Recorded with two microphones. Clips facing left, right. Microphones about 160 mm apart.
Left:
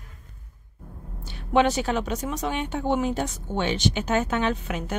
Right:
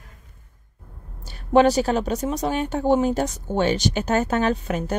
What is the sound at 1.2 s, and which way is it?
A woman's voice, 40° right (ahead or behind).